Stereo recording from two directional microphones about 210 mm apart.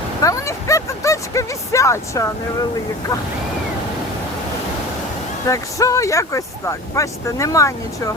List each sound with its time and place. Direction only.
0.2 s speech: 15° left (ahead or behind)
5.5 s speech: 15° left (ahead or behind)